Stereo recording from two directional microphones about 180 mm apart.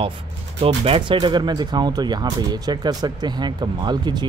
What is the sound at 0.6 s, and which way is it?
Speech, 35° right (ahead or behind).